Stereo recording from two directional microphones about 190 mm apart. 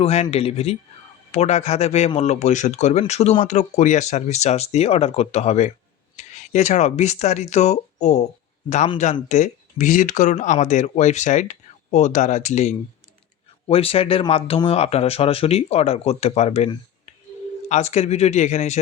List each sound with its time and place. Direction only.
0.0 s speech: 35° left (ahead or behind)